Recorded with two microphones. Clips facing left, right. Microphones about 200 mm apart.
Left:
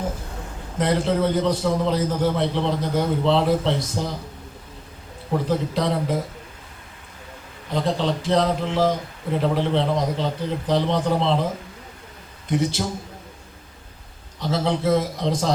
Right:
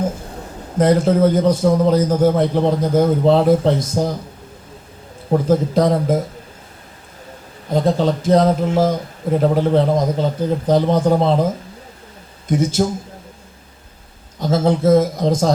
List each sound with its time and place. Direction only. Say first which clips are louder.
0.8 s a man's voice: right 7 dB; 45° right (ahead or behind)
5.5 s a man's voice: right 8 dB; 45° right (ahead or behind)
7.7 s a man's voice: right 6 dB; 45° right (ahead or behind)
12.5 s a man's voice: right 4 dB; 45° right (ahead or behind)
14.3 s a man's voice: right 6 dB; 45° right (ahead or behind)